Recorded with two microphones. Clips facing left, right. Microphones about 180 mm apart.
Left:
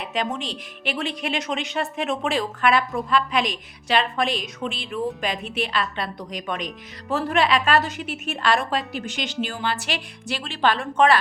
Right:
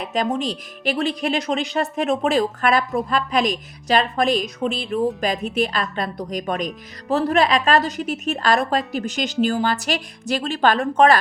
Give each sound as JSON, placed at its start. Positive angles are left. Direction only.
{"t": 0.0, "sound": "speech", "side_deg": -40}